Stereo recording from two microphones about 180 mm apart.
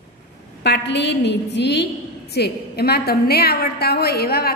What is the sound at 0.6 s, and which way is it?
A woman's voice, 70° left (ahead or behind).